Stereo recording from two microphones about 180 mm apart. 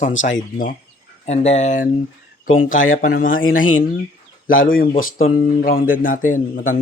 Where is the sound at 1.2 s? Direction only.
40° left (ahead or behind).